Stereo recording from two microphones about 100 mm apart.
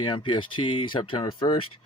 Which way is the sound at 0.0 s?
55° left (ahead or behind).